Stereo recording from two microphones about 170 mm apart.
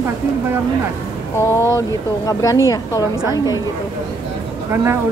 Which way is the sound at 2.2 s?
20° left (ahead or behind).